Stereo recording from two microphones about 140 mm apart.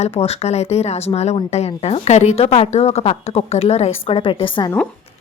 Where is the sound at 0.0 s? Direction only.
50° left (ahead or behind).